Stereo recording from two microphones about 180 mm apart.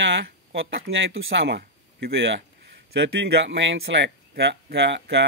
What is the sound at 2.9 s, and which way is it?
Speech, 70° right (ahead or behind).